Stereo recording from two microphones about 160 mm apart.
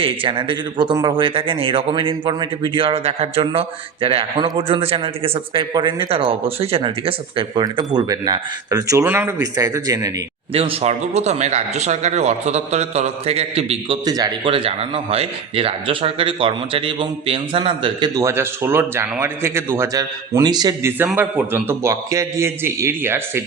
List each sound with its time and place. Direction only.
0.0 s a man's voice: 35° right (ahead or behind)
10.5 s speech: 35° right (ahead or behind)
21.0 s a man's voice: 10° right (ahead or behind)